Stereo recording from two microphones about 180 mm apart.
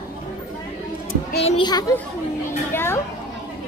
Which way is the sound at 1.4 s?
35° left (ahead or behind).